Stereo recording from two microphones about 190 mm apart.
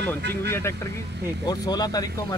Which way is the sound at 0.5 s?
15° left (ahead or behind).